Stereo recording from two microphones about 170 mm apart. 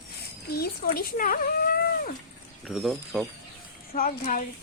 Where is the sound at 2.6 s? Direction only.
Centre (ahead or behind).